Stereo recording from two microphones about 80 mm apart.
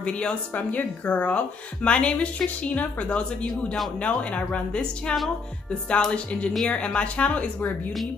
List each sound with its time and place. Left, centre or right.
0.0 s speech: centre